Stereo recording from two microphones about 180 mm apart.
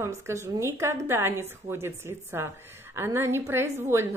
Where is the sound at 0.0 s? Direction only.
15° right (ahead or behind).